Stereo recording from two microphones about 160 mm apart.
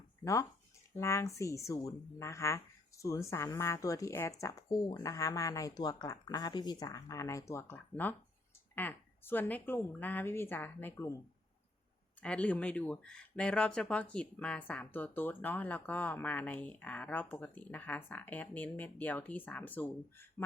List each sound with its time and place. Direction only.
0.9 s speech: 20° left (ahead or behind)
12.2 s speech: 5° left (ahead or behind)